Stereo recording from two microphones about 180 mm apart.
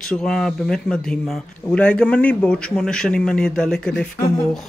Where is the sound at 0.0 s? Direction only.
5° left (ahead or behind).